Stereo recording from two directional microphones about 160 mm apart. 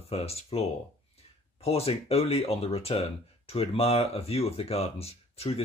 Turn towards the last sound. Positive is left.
turn(degrees=40)  # may be behind; listen again after turning